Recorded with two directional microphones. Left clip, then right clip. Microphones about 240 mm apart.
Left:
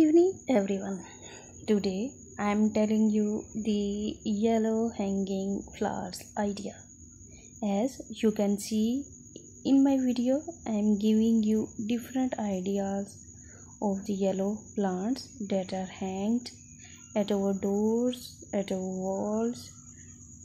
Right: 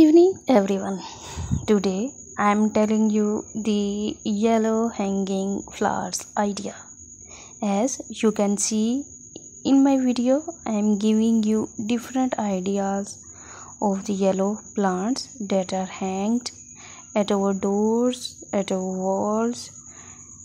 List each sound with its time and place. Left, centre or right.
0.0 s a woman's voice: right
18.9 s speech: right
19.3 s speech: centre